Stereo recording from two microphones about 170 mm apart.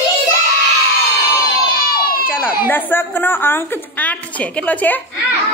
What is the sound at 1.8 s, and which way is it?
Baby cry, 60° left (ahead or behind).